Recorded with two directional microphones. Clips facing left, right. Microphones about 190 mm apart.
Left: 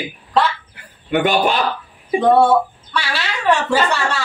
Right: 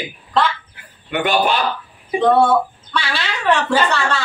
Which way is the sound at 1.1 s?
45° left (ahead or behind).